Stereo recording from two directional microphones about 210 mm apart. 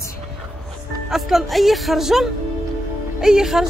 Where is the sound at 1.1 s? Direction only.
Centre (ahead or behind).